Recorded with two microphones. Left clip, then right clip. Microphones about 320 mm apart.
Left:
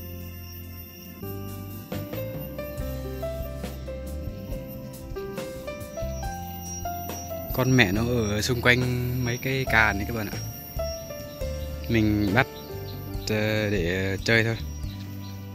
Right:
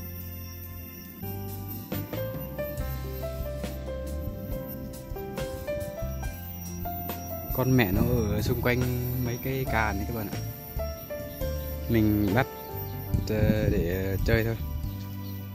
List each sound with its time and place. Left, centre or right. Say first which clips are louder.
1.9 s music: left 1 dB; centre
5.3 s music: right 5 dB; centre
7.1 s speech: left 3 dB; centre
11.3 s music: left 1 dB; centre
13.2 s speech: left 2 dB; centre